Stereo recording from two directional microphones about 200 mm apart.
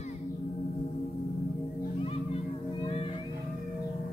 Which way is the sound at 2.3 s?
30° left (ahead or behind).